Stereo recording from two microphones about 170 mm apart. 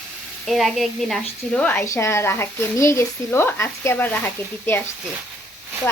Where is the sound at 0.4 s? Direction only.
Centre (ahead or behind).